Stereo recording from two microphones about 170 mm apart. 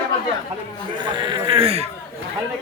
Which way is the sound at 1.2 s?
30° right (ahead or behind).